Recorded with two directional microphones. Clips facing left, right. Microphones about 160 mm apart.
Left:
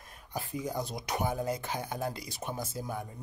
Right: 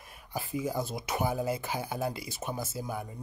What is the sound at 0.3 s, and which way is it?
Speech, 5° right (ahead or behind).